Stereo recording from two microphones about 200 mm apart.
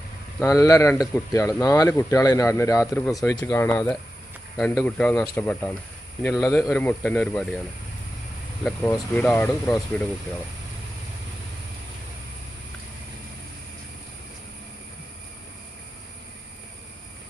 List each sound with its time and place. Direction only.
0.4 s speech: 15° left (ahead or behind)
8.6 s speech: 10° left (ahead or behind)